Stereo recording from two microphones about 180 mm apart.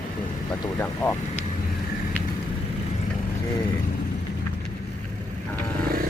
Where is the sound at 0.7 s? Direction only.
15° left (ahead or behind).